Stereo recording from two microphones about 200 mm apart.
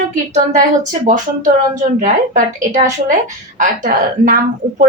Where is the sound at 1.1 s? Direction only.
40° right (ahead or behind).